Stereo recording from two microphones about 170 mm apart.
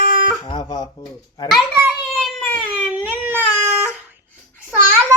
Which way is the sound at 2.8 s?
10° right (ahead or behind).